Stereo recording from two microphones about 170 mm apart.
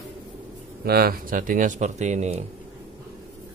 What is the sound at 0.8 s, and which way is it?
Speech, 60° right (ahead or behind).